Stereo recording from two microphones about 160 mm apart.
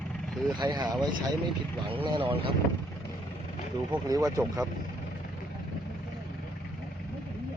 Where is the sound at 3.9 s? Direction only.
25° right (ahead or behind).